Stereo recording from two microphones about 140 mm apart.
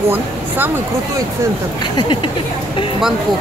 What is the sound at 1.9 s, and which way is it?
Speech, 35° left (ahead or behind).